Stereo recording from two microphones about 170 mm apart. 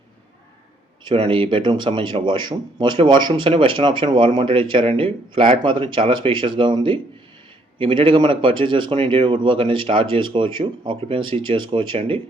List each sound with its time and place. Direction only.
1.0 s speech: 30° right (ahead or behind)